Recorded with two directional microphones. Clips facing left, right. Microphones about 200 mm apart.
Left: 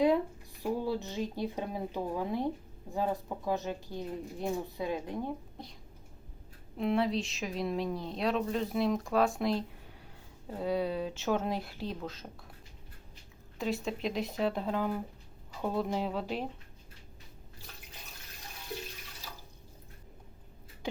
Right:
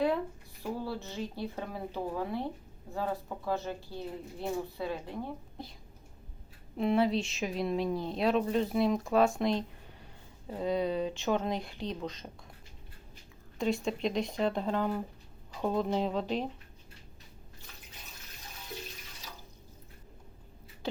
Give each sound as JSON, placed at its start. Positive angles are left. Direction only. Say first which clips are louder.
{"t": 0.6, "sound": "speech", "louder": "left 4 dB", "side_deg": 15}
{"t": 6.7, "sound": "a woman's voice", "louder": "right 2 dB", "side_deg": 0}
{"t": 13.6, "sound": "a woman's voice", "louder": "right 3 dB", "side_deg": 5}